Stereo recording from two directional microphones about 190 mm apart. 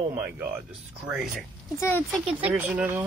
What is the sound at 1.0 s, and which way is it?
Speech, 5° right (ahead or behind).